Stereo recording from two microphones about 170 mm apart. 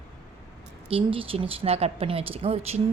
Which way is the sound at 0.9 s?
35° right (ahead or behind).